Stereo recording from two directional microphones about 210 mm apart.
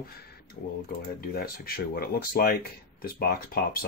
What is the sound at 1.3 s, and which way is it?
Speech, 45° left (ahead or behind).